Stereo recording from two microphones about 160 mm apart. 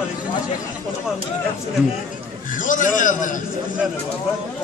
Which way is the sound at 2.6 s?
55° left (ahead or behind).